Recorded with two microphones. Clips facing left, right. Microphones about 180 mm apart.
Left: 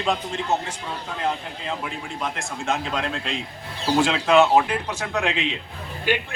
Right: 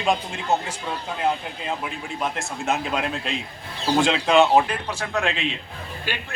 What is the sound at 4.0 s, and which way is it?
Speech, 5° left (ahead or behind).